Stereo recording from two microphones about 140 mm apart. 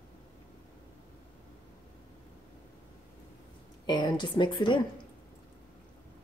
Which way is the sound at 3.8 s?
35° left (ahead or behind).